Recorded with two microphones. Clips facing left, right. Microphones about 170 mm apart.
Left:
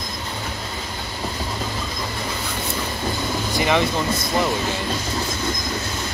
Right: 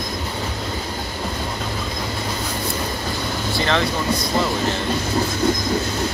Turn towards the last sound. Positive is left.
turn(degrees=15)  # may be behind; listen again after turning